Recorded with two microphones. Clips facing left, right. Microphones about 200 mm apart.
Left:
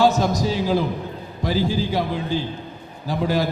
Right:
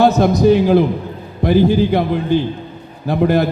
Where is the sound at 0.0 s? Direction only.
60° right (ahead or behind).